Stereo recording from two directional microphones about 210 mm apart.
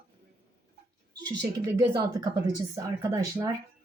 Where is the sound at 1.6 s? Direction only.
15° right (ahead or behind).